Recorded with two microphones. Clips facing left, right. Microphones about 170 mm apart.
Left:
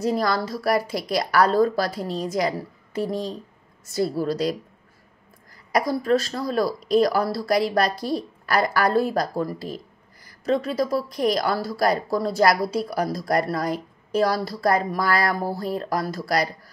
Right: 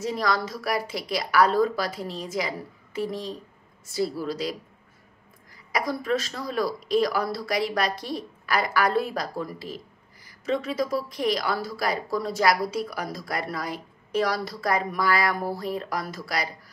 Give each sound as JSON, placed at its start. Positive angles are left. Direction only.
{"t": 0.0, "sound": "a woman's voice", "side_deg": 35}
{"t": 5.7, "sound": "a woman's voice", "side_deg": 40}